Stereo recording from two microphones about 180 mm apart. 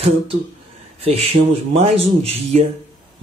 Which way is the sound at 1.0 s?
35° right (ahead or behind).